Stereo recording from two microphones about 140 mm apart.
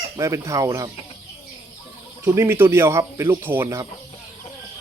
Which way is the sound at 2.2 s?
20° right (ahead or behind).